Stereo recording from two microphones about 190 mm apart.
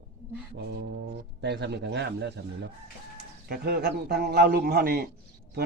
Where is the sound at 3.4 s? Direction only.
55° right (ahead or behind).